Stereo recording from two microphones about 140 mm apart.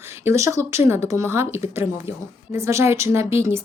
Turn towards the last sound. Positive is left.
turn(degrees=-20)  # may be behind; listen again after turning